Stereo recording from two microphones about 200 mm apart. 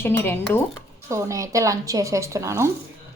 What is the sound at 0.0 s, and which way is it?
Speech, 10° left (ahead or behind).